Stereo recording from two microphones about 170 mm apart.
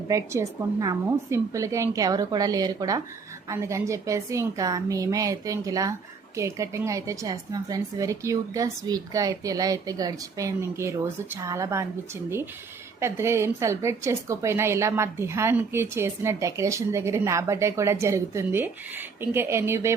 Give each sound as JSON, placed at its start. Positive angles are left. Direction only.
{"t": 0.1, "sound": "a woman's voice", "side_deg": -20}
{"t": 13.0, "sound": "a woman's voice", "side_deg": -15}